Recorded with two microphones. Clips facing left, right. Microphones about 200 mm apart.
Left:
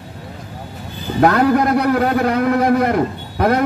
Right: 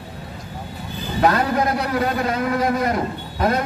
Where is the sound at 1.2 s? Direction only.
60° left (ahead or behind).